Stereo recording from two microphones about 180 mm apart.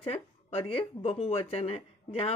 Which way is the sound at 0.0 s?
30° left (ahead or behind).